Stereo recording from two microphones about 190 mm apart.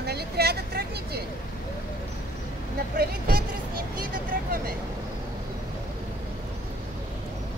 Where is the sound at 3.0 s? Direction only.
55° right (ahead or behind).